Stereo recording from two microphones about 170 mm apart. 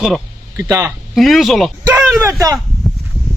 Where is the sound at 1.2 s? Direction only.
Centre (ahead or behind).